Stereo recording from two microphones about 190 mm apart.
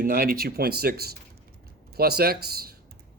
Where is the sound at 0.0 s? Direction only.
50° right (ahead or behind).